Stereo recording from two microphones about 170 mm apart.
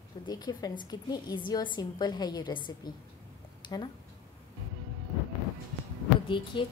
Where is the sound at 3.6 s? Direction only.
25° left (ahead or behind).